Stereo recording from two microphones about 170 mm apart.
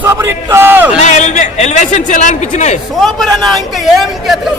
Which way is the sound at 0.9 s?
45° left (ahead or behind).